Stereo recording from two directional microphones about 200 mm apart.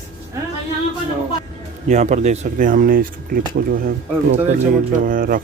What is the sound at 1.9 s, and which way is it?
Speech, 35° right (ahead or behind).